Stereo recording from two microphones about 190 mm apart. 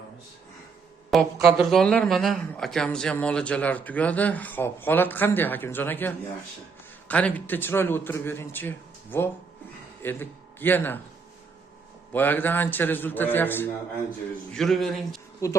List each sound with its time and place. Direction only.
1.1 s a man's voice: centre (ahead or behind)
12.1 s speech: 10° left (ahead or behind)
15.4 s speech: 15° left (ahead or behind)